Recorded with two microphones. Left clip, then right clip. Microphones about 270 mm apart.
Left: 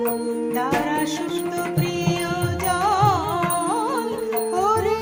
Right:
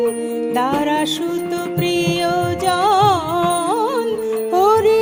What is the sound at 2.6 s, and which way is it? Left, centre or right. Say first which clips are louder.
Music: right 5 dB; right.